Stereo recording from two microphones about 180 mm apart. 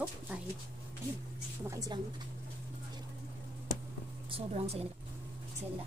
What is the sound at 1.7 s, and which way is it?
Speech, 20° right (ahead or behind).